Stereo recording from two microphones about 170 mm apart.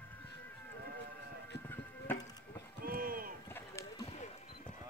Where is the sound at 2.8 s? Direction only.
60° right (ahead or behind).